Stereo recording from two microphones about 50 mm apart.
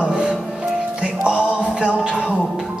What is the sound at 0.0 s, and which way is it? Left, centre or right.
Music, centre.